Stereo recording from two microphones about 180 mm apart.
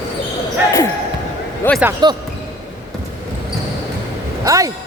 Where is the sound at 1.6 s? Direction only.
15° left (ahead or behind).